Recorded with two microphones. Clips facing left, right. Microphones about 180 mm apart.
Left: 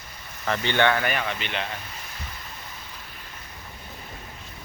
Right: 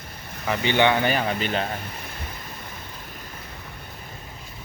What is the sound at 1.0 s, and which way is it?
Speech, 35° right (ahead or behind).